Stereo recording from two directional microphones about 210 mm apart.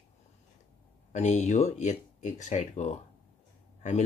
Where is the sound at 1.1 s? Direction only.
35° left (ahead or behind).